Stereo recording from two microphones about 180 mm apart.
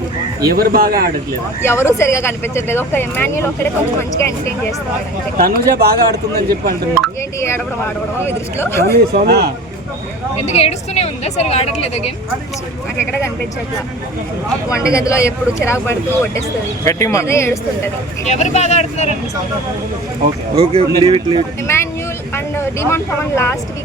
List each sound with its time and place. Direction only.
0.4 s a man's voice: 55° right (ahead or behind)
1.6 s speech: 15° left (ahead or behind)
5.4 s a man's voice: 55° right (ahead or behind)
7.3 s speech: 15° left (ahead or behind)
9.2 s a man's voice: 65° right (ahead or behind)
10.4 s a woman's voice: 35° left (ahead or behind)
14.7 s speech: 15° left (ahead or behind)
18.3 s a woman's voice: 40° left (ahead or behind)
20.6 s speech: 30° right (ahead or behind)
21.7 s speech: 15° left (ahead or behind)